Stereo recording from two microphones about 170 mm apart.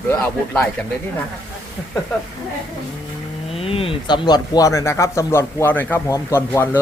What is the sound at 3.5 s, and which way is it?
Speech, 35° left (ahead or behind).